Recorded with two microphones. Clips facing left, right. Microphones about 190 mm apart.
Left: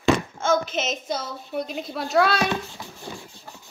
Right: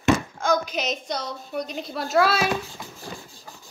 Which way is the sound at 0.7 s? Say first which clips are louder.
Left 1 dB; centre (ahead or behind).